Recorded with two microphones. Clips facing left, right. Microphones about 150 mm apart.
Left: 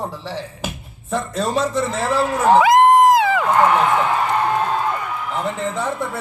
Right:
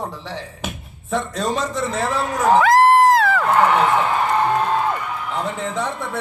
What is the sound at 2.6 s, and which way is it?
Crowd, 15° left (ahead or behind).